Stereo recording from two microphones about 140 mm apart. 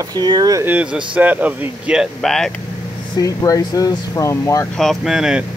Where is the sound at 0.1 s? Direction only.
30° right (ahead or behind).